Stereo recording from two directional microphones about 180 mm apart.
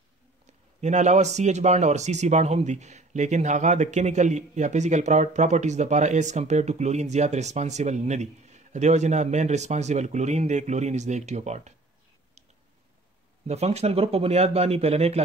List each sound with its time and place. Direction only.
0.7 s speech: 40° right (ahead or behind)
13.5 s speech: 35° right (ahead or behind)